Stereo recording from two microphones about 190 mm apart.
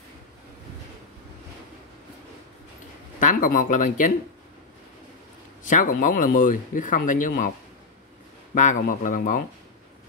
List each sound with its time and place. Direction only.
3.2 s speech: 45° left (ahead or behind)
5.6 s speech: 45° left (ahead or behind)
8.5 s speech: 40° left (ahead or behind)